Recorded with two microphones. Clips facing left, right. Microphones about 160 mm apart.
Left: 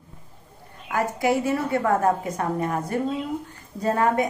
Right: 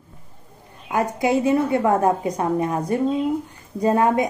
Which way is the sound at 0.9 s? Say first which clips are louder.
Right 2 dB; 20° right (ahead or behind).